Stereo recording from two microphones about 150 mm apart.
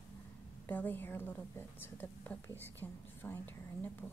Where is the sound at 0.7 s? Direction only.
10° left (ahead or behind).